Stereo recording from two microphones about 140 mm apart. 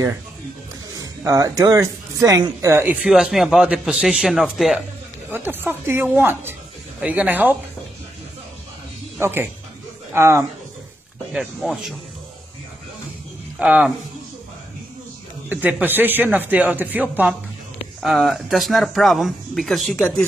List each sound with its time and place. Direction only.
0.9 s speech: 25° right (ahead or behind)
3.1 s speech: 5° right (ahead or behind)
5.3 s speech: 15° right (ahead or behind)
9.2 s speech: 15° right (ahead or behind)
11.3 s speech: centre (ahead or behind)
13.6 s speech: 5° right (ahead or behind)
15.5 s speech: 15° right (ahead or behind)
18.0 s speech: centre (ahead or behind)